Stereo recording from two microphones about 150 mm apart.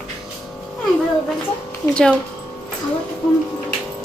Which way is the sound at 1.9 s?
5° left (ahead or behind).